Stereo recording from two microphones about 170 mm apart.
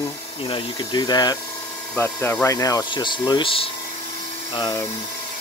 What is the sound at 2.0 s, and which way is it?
Speech, 10° left (ahead or behind).